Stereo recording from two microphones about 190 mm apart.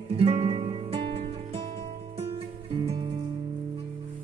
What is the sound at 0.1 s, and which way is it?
Music, 30° right (ahead or behind).